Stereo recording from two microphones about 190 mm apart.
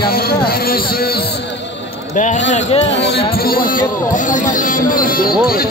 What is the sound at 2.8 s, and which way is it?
Speech, 65° left (ahead or behind).